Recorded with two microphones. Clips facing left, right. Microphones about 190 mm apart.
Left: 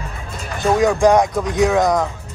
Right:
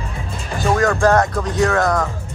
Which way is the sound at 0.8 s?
15° left (ahead or behind).